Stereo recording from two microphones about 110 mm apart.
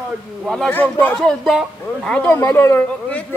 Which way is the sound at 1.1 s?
Centre (ahead or behind).